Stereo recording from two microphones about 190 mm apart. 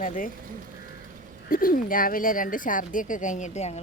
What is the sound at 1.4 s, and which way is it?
Speech, 50° left (ahead or behind).